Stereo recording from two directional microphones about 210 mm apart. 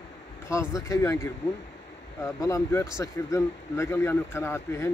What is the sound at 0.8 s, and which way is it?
Speech, 15° left (ahead or behind).